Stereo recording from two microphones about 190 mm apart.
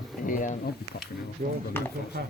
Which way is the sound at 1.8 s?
10° left (ahead or behind).